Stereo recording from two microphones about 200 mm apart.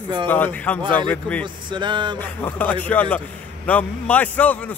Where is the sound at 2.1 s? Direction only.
10° left (ahead or behind).